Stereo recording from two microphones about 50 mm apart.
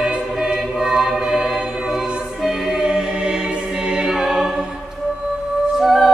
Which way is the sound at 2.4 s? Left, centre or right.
Centre.